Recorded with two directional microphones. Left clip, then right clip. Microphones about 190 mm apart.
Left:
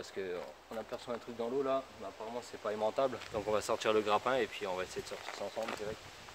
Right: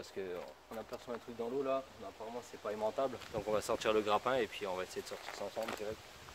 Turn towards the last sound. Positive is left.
turn(degrees=-10)  # may be behind; listen again after turning